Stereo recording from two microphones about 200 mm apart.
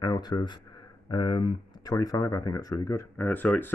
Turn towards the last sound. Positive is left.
turn(degrees=10)  # may be behind; listen again after turning